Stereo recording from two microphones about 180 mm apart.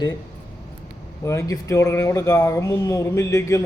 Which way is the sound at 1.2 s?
15° left (ahead or behind).